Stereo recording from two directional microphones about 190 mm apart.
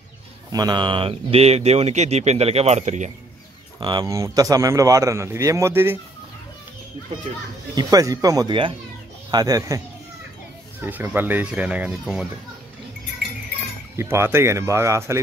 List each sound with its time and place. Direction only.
0.5 s speech: 20° right (ahead or behind); by 3.1 s 35° right (ahead or behind)
3.8 s a man's voice: 20° right (ahead or behind)
7.7 s speech: 20° right (ahead or behind)
10.8 s a man's voice: 10° right (ahead or behind)
13.9 s a man's voice: 15° right (ahead or behind)